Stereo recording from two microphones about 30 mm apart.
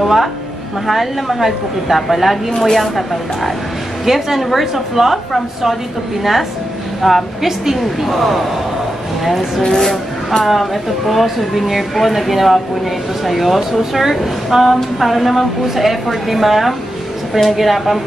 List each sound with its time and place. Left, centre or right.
0.0 s a woman's voice: centre
2.5 s speech: centre
2.8 s speech: centre
4.0 s a woman's voice: centre
7.0 s a woman's voice: centre
9.6 s speech: centre
10.4 s speech: centre